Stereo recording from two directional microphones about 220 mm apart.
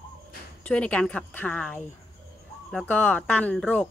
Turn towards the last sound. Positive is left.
turn(degrees=5)  # may be behind; listen again after turning